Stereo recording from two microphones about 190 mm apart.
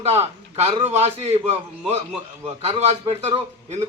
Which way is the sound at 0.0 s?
35° right (ahead or behind).